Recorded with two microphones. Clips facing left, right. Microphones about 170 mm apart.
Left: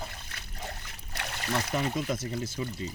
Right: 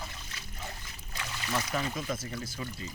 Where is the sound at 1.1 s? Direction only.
60° left (ahead or behind).